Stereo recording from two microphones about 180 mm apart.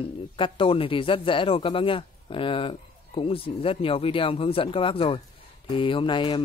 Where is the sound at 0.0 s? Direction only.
30° left (ahead or behind).